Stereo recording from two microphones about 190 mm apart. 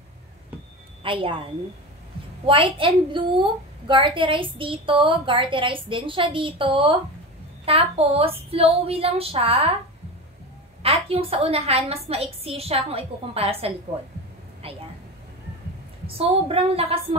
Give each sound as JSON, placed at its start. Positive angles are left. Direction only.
{"t": 1.0, "sound": "a woman's voice", "side_deg": -25}
{"t": 10.8, "sound": "a woman's voice", "side_deg": -30}
{"t": 16.1, "sound": "a woman's voice", "side_deg": -30}